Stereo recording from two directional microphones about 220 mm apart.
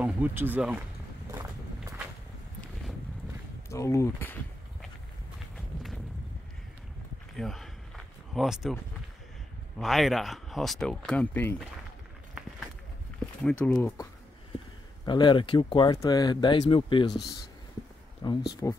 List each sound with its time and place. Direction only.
0.0 s speech: 10° right (ahead or behind)
1.3 s vehicle: 15° right (ahead or behind)
3.6 s speech: 15° left (ahead or behind)
7.3 s a sound: centre (ahead or behind)
9.8 s speech: centre (ahead or behind)
13.2 s speech: 5° left (ahead or behind)
15.0 s speech: 20° left (ahead or behind)
18.2 s speech: 20° left (ahead or behind)